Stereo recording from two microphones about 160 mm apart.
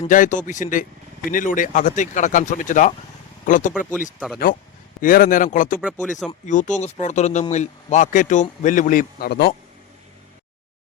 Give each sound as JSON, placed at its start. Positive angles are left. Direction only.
{"t": 0.1, "sound": "a man's voice", "side_deg": 55}
{"t": 4.9, "sound": "speech", "side_deg": 60}
{"t": 6.0, "sound": "speech", "side_deg": 0}
{"t": 6.4, "sound": "a man's voice", "side_deg": 50}